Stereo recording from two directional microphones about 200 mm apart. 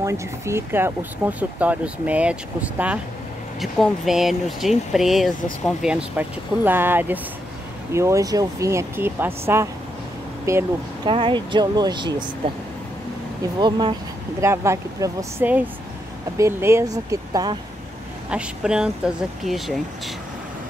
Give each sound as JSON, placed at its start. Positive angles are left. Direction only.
{"t": 0.0, "sound": "speech", "side_deg": -15}
{"t": 13.6, "sound": "speech", "side_deg": -20}
{"t": 18.3, "sound": "speech", "side_deg": -5}